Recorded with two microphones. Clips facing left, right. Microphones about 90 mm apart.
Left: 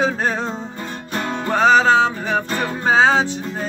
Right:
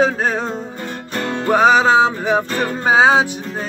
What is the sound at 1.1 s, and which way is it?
Music, 15° left (ahead or behind).